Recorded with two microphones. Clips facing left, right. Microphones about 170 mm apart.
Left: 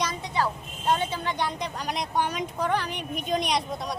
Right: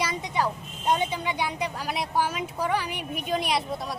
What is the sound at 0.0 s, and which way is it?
Speech, 10° right (ahead or behind).